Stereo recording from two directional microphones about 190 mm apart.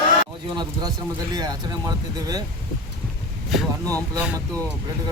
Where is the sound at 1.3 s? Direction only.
20° right (ahead or behind).